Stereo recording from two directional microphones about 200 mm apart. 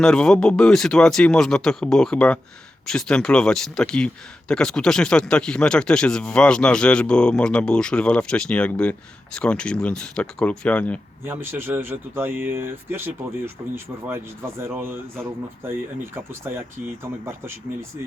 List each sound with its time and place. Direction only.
0.0 s speech: 5° left (ahead or behind)
11.3 s speech: 10° right (ahead or behind)
14.8 s speech: 10° right (ahead or behind)